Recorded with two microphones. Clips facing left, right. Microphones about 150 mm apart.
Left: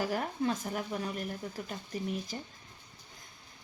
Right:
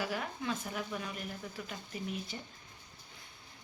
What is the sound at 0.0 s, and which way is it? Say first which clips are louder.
A woman's voice: left 5 dB; 40° left (ahead or behind).